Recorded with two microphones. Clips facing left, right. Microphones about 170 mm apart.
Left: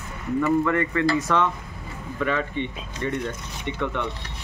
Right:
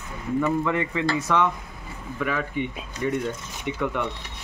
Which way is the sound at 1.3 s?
5° right (ahead or behind).